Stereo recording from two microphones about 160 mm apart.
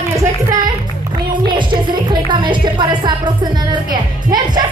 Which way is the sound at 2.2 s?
30° right (ahead or behind).